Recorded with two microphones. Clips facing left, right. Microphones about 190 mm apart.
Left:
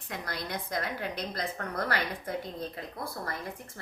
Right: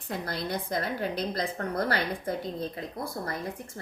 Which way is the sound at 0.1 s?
30° right (ahead or behind).